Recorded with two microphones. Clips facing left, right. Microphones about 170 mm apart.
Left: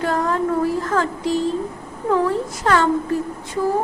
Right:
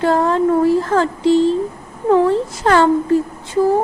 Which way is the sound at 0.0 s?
30° right (ahead or behind).